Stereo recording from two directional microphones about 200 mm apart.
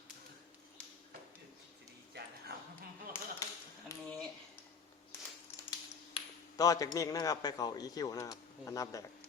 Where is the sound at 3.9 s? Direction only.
15° left (ahead or behind).